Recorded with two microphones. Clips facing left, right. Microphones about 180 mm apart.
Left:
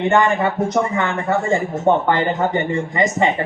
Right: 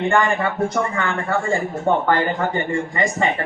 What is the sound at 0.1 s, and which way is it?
A man's voice, 20° left (ahead or behind).